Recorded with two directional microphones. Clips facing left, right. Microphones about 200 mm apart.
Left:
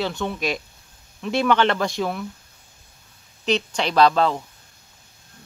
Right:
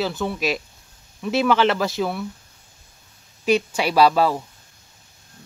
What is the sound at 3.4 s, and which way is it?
Speech, 10° right (ahead or behind).